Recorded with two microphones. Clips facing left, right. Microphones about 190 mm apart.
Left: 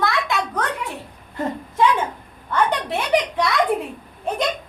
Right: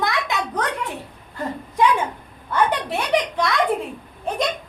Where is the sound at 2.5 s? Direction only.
Centre (ahead or behind).